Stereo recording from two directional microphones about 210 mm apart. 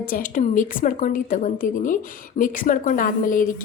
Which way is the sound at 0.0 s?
40° left (ahead or behind).